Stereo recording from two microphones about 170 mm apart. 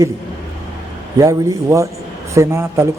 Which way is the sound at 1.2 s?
20° right (ahead or behind).